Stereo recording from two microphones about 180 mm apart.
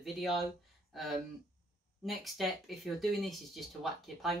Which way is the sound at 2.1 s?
Centre (ahead or behind).